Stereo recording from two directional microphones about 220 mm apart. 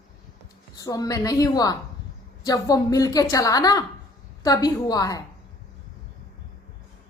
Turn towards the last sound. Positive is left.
turn(degrees=15)  # may be behind; listen again after turning